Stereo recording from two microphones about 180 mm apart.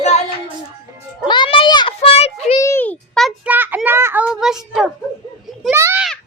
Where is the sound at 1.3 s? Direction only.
25° left (ahead or behind).